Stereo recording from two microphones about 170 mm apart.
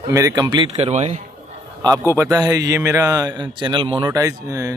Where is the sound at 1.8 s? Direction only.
20° right (ahead or behind).